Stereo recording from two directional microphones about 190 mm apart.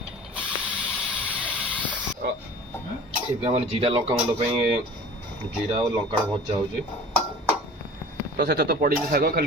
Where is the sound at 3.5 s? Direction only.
30° right (ahead or behind).